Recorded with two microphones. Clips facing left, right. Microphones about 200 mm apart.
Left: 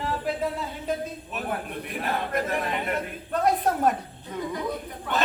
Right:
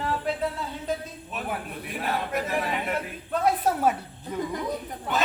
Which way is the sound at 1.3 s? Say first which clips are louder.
Left 1 dB; centre (ahead or behind).